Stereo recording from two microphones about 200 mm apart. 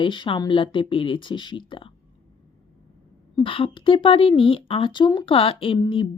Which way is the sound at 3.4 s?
25° left (ahead or behind).